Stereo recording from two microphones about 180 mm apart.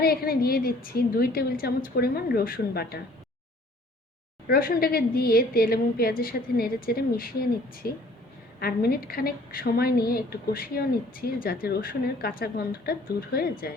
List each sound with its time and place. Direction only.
0.0 s a woman's voice: 55° left (ahead or behind)
4.4 s a woman's voice: 55° left (ahead or behind)